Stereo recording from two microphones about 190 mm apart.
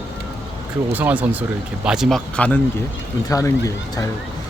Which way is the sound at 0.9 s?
10° right (ahead or behind).